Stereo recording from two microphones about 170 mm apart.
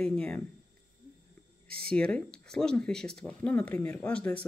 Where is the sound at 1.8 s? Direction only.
5° left (ahead or behind).